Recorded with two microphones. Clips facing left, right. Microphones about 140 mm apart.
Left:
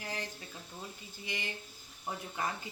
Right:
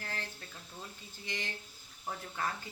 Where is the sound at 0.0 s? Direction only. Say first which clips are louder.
Left 2 dB; 15° left (ahead or behind).